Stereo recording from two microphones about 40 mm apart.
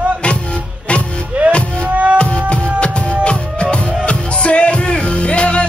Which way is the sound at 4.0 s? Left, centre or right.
Left.